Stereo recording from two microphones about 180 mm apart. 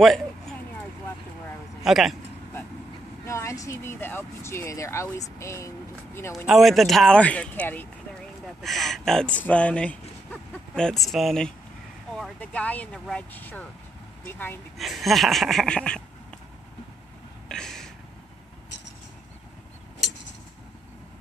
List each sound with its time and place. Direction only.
0.0 s a sound: centre (ahead or behind)
1.8 s a man's voice: centre (ahead or behind)
3.3 s speech: 15° left (ahead or behind)
6.3 s speech: centre (ahead or behind)
14.8 s speech: centre (ahead or behind)
17.5 s a sound: 5° left (ahead or behind)